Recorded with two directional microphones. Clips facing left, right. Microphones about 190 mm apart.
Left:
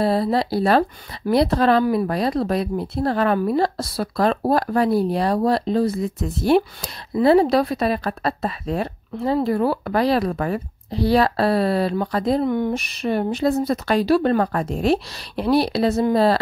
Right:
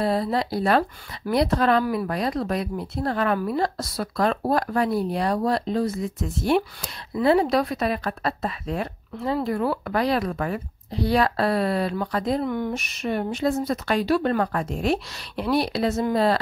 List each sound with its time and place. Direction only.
0.0 s speech: 35° left (ahead or behind)